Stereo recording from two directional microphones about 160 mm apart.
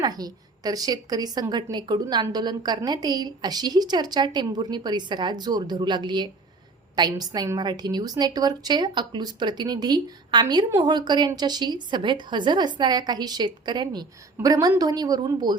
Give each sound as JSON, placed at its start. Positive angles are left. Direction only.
{"t": 0.0, "sound": "a woman's voice", "side_deg": -25}